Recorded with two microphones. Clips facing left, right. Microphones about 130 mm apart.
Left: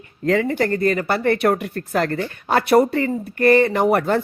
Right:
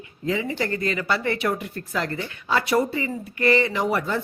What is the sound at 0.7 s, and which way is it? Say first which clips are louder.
A man's voice: left 6 dB; 45° left (ahead or behind).